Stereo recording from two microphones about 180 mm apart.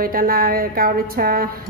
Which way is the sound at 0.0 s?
55° right (ahead or behind).